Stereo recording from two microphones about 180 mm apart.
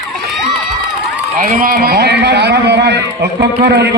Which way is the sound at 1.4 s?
50° right (ahead or behind).